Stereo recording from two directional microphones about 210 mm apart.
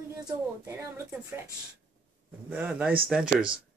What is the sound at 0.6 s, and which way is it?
Speech, 10° right (ahead or behind).